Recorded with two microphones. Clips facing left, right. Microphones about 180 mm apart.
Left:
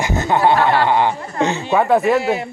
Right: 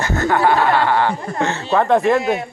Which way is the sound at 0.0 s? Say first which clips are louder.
Left 1 dB; 20° left (ahead or behind).